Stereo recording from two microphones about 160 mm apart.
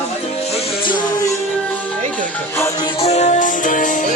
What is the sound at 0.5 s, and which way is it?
Music, 35° left (ahead or behind).